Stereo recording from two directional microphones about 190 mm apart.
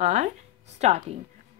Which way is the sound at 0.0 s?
35° right (ahead or behind).